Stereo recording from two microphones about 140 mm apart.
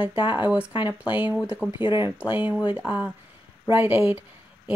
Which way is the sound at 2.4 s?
10° right (ahead or behind).